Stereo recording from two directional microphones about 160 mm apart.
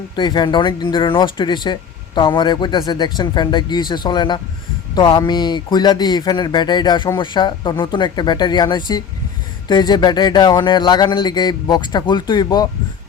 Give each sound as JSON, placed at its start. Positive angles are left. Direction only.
{"t": 0.2, "sound": "speech", "side_deg": 30}